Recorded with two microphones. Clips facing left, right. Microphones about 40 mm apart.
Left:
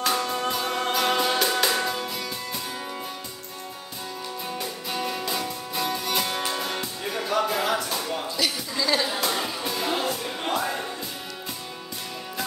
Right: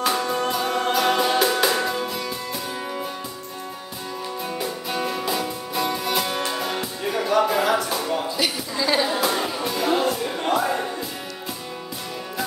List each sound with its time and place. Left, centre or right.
0.0 s music: centre
4.5 s music: centre
8.4 s a sound: right
9.1 s music: centre